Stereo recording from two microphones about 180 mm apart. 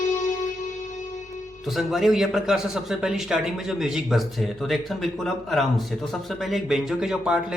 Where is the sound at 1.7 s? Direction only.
Centre (ahead or behind).